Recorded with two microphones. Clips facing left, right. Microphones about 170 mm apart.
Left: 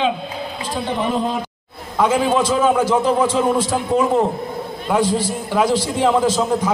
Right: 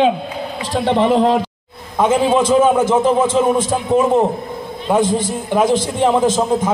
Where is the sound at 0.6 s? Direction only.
90° right.